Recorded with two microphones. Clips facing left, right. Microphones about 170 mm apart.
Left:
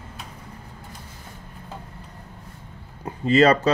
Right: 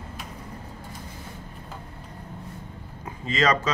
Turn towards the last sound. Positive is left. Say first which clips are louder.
# left 7 dB
turn(degrees=35)  # may be behind; listen again after turning